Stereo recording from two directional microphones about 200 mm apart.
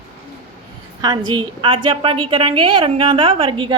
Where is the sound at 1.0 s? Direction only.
20° right (ahead or behind).